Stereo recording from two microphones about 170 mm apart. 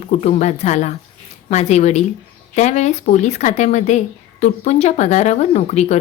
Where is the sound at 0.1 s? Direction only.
40° left (ahead or behind).